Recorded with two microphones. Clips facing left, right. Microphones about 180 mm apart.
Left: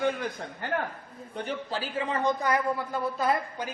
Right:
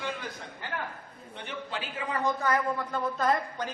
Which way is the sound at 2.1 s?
20° left (ahead or behind).